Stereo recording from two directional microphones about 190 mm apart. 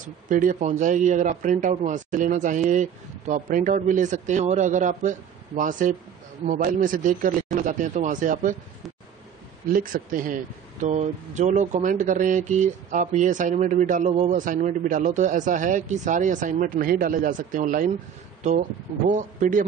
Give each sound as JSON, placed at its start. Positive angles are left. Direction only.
{"t": 0.0, "sound": "speech", "side_deg": -45}
{"t": 9.7, "sound": "speech", "side_deg": -45}